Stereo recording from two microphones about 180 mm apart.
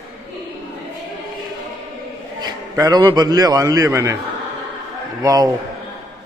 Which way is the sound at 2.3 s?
20° right (ahead or behind).